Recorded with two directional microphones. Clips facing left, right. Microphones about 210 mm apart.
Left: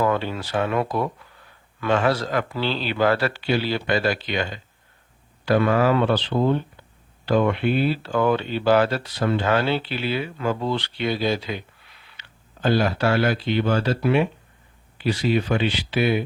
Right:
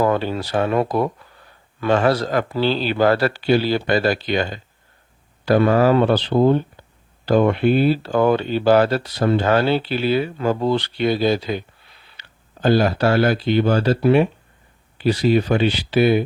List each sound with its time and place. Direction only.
0.0 s speech: 35° right (ahead or behind)
12.2 s a sound: 40° right (ahead or behind)
12.6 s speech: 40° right (ahead or behind)